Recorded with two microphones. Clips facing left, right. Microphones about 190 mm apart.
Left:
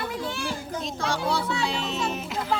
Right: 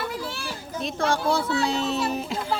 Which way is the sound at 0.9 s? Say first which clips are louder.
Right 4 dB; 50° right (ahead or behind).